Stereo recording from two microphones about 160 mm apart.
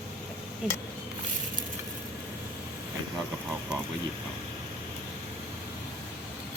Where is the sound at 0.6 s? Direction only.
5° right (ahead or behind).